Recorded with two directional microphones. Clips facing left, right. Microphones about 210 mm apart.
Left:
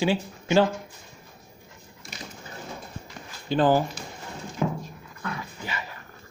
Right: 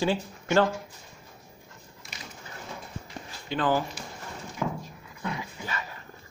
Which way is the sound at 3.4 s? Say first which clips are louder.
Left 5 dB; 35° left (ahead or behind).